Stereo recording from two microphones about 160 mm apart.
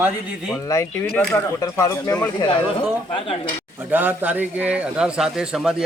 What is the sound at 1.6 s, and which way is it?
Speech, 20° left (ahead or behind).